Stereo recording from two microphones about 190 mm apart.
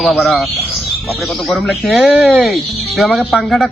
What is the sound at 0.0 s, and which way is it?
Speech, centre (ahead or behind).